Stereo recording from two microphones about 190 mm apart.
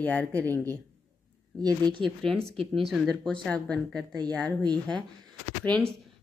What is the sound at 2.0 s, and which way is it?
A woman's voice, centre (ahead or behind).